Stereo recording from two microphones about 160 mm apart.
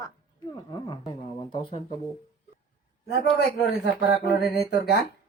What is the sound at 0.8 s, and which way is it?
Speech, 30° left (ahead or behind).